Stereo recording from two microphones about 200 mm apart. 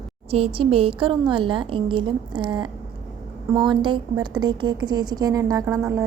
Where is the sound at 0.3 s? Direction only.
30° right (ahead or behind).